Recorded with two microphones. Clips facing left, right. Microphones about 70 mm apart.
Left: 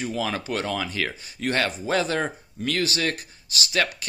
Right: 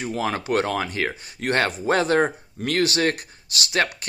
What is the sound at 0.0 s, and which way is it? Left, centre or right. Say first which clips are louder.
Speech: right 2 dB; right.